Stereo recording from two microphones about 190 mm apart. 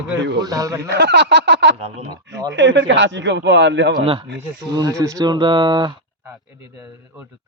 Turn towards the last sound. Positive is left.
turn(degrees=-25)  # may be behind; listen again after turning